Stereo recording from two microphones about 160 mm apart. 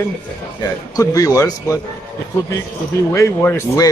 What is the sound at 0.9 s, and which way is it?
Speech, 20° left (ahead or behind).